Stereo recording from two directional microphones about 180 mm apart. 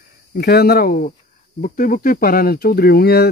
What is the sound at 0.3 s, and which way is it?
Speech, 65° left (ahead or behind).